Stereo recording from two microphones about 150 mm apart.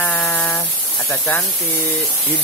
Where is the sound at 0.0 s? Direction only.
10° left (ahead or behind).